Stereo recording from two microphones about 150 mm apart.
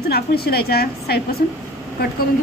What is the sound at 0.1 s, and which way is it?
A woman's voice, 90° left.